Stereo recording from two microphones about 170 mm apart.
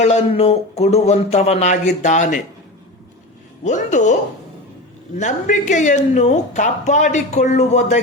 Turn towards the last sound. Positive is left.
turn(degrees=40)  # may be behind; listen again after turning